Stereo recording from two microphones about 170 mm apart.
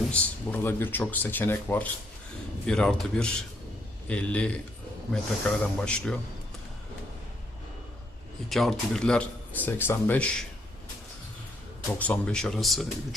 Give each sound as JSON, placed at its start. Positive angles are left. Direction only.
{"t": 0.1, "sound": "speech", "side_deg": 10}
{"t": 8.4, "sound": "speech", "side_deg": 0}
{"t": 11.9, "sound": "speech", "side_deg": 10}